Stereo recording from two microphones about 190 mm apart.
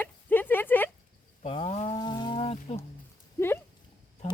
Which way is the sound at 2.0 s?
20° left (ahead or behind).